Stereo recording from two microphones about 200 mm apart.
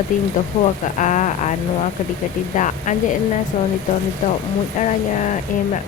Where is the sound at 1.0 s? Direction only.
40° left (ahead or behind).